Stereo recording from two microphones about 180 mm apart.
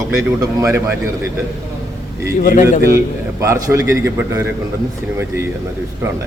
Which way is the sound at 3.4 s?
15° right (ahead or behind).